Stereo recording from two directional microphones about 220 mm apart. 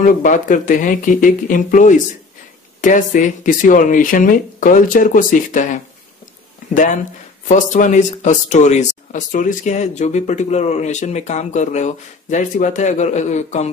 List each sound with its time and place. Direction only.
0.2 s speech: 35° left (ahead or behind)